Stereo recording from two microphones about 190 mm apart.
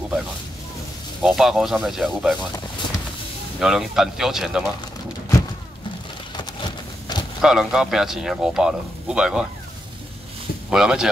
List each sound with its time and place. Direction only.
1.2 s speech: centre (ahead or behind)
3.5 s speech: centre (ahead or behind)
6.3 s a sound: 25° left (ahead or behind)
7.4 s speech: 5° right (ahead or behind)
10.7 s speech: 5° right (ahead or behind)